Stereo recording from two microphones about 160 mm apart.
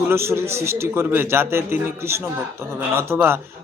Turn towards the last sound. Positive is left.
turn(degrees=-15)  # may be behind; listen again after turning